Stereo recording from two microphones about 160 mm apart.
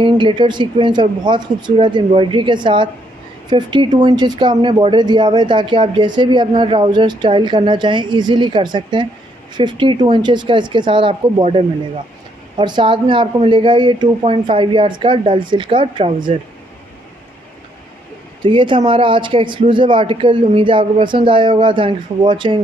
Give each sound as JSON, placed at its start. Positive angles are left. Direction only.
{"t": 0.0, "sound": "speech", "side_deg": -30}
{"t": 18.4, "sound": "speech", "side_deg": -30}